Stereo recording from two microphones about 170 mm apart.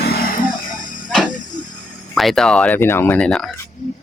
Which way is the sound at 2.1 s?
Centre (ahead or behind).